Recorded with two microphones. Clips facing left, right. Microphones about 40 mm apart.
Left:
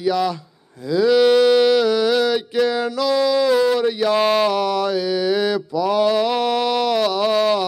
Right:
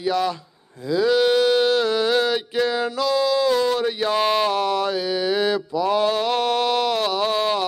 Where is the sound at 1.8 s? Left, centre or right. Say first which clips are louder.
Left 3 dB; right.